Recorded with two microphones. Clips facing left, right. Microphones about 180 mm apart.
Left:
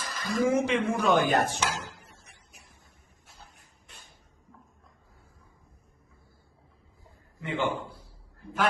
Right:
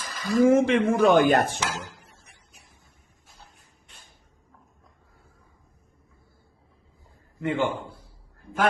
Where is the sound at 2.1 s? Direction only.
75° left (ahead or behind).